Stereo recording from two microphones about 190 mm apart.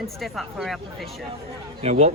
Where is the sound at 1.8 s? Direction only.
35° right (ahead or behind).